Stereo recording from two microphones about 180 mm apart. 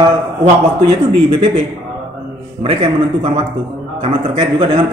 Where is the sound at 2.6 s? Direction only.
35° right (ahead or behind).